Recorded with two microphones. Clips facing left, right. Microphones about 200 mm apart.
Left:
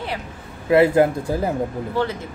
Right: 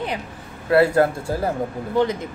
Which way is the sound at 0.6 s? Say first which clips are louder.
Left 2 dB; 15° left (ahead or behind).